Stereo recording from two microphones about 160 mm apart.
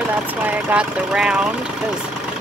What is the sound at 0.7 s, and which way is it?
Speech, 5° right (ahead or behind).